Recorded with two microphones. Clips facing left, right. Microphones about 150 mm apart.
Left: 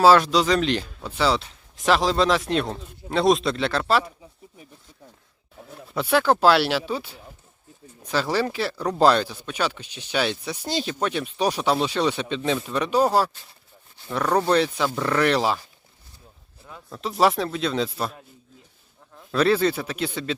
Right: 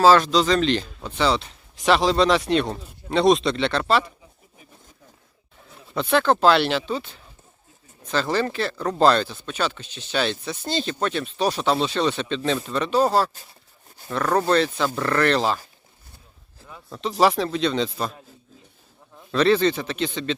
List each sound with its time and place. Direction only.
0.0 s speech: 10° left (ahead or behind)
5.7 s speech: 5° left (ahead or behind)
16.6 s speech: centre (ahead or behind)